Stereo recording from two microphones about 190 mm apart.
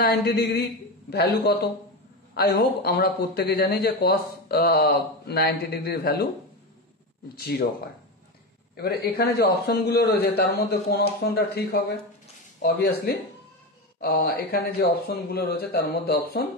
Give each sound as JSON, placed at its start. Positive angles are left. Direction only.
{"t": 0.0, "sound": "a man's voice", "side_deg": 55}
{"t": 7.3, "sound": "a man's voice", "side_deg": 55}
{"t": 8.7, "sound": "a man's voice", "side_deg": 55}